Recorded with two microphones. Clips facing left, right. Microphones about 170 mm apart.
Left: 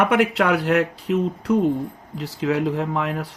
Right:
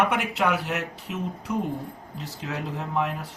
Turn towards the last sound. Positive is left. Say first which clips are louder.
# left 4 dB
turn(degrees=70)  # may be behind; listen again after turning